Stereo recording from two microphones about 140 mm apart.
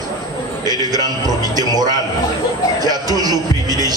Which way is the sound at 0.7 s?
30° right (ahead or behind).